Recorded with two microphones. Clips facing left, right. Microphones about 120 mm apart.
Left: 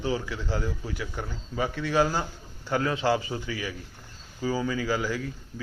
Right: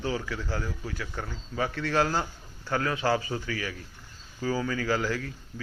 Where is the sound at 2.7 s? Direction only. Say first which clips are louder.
Left 2 dB; 20° left (ahead or behind).